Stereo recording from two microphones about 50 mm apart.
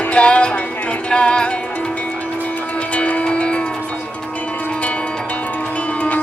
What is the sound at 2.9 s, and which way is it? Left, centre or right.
Music, left.